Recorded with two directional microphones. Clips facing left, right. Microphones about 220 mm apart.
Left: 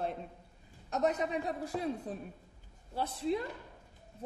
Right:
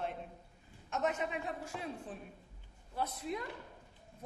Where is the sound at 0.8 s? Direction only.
35° left (ahead or behind).